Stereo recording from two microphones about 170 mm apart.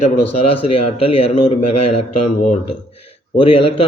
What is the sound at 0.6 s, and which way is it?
Speech, 35° left (ahead or behind).